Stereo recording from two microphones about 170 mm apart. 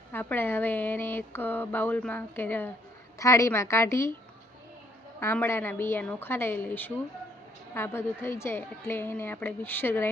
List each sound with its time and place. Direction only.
0.1 s speech: 10° left (ahead or behind)
5.2 s speech: 10° left (ahead or behind)